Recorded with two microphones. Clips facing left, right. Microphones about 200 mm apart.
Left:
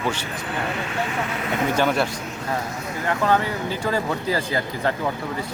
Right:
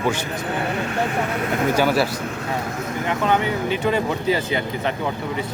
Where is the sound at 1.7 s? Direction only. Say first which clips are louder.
Right 2 dB; 5° right (ahead or behind).